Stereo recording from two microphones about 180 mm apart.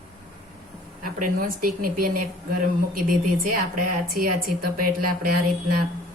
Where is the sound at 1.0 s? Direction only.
50° right (ahead or behind).